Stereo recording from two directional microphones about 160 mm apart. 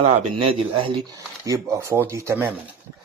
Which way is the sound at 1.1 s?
20° right (ahead or behind).